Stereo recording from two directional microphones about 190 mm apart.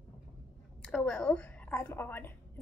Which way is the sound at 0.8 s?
5° left (ahead or behind).